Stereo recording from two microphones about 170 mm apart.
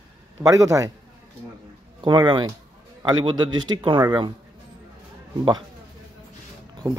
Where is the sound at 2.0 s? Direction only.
25° right (ahead or behind).